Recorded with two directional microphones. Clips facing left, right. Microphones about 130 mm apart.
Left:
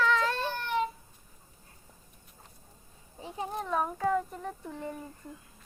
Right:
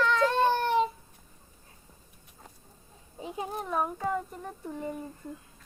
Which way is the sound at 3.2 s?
15° right (ahead or behind).